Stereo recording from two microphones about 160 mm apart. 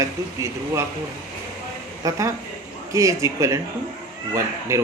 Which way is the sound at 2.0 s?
20° right (ahead or behind).